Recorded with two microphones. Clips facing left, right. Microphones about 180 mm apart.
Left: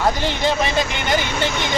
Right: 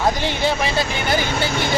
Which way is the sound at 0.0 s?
10° right (ahead or behind).